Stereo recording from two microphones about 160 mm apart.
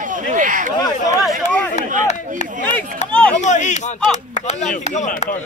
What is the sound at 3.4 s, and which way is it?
Speech, 45° left (ahead or behind).